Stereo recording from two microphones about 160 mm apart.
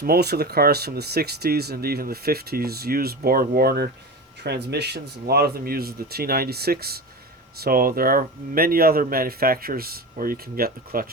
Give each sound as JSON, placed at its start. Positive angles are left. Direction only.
{"t": 0.0, "sound": "speech", "side_deg": -80}
{"t": 4.4, "sound": "speech", "side_deg": -90}